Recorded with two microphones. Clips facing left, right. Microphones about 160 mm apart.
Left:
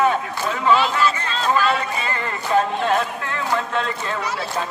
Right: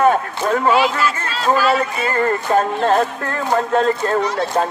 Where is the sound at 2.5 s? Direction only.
45° right (ahead or behind).